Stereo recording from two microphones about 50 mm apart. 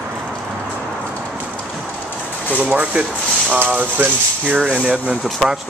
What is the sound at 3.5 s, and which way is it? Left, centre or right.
Speech, right.